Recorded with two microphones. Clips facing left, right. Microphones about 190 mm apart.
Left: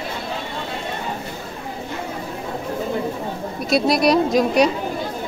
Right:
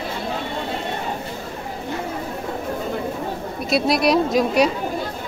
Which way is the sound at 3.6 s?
Centre (ahead or behind).